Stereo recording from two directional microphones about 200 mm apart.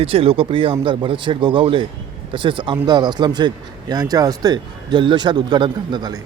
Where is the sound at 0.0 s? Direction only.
30° right (ahead or behind).